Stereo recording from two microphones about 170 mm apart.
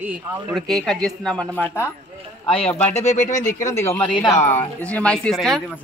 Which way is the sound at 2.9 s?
45° left (ahead or behind).